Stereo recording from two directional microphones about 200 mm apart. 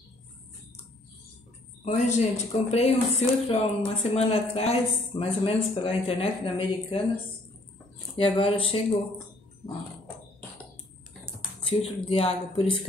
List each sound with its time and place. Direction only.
1.9 s speech: 35° left (ahead or behind)
8.2 s speech: 25° left (ahead or behind)
11.8 s speech: 30° left (ahead or behind)